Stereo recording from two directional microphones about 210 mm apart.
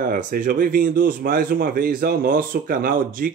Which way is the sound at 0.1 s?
40° right (ahead or behind).